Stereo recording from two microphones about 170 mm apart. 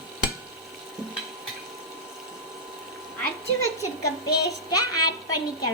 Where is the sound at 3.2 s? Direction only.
15° left (ahead or behind).